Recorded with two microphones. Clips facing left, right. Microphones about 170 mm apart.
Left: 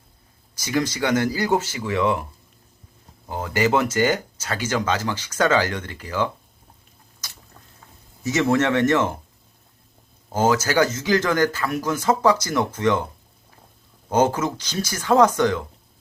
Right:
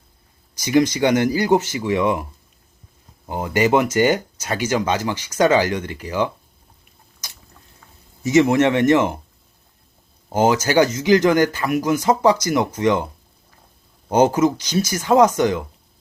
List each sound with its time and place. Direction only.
0.6 s speech: 15° right (ahead or behind)
3.2 s speech: 20° right (ahead or behind)
8.2 s speech: 15° right (ahead or behind)
10.2 s speech: 15° right (ahead or behind)
14.1 s speech: 15° right (ahead or behind)